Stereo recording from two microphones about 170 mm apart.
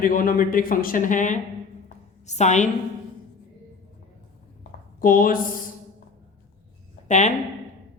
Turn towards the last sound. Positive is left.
turn(degrees=45)  # may be behind; listen again after turning